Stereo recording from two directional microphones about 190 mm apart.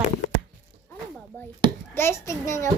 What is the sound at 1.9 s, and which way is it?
Speech, 15° left (ahead or behind).